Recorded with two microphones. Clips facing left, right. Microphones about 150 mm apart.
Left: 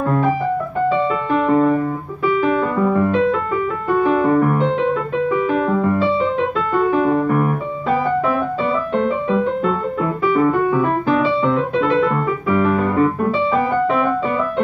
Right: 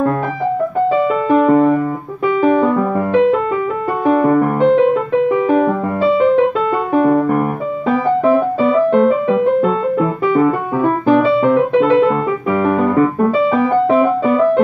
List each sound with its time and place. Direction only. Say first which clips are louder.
1.3 s music: right 4 dB; 5° right (ahead or behind)
2.6 s music: right 2 dB; 25° right (ahead or behind)
4.2 s music: right 3 dB; 55° right (ahead or behind)
7.0 s music: right 4 dB; 45° right (ahead or behind)
12.4 s music: right 2 dB; 40° right (ahead or behind)